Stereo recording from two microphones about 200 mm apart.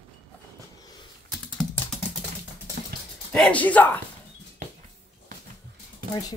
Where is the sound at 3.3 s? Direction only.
5° left (ahead or behind).